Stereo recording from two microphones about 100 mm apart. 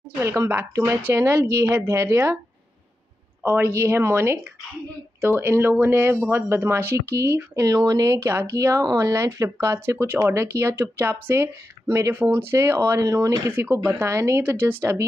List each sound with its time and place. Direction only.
0.2 s speech: 25° right (ahead or behind)
3.4 s speech: 25° right (ahead or behind)
13.5 s speech: 20° right (ahead or behind)